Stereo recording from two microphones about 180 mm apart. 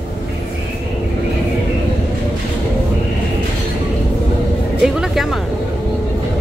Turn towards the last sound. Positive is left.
turn(degrees=0)  # may be behind; listen again after turning